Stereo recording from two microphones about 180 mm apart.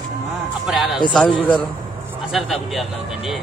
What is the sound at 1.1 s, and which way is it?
Speech, 5° left (ahead or behind).